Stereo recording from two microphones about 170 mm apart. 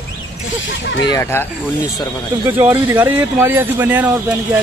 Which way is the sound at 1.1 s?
15° left (ahead or behind).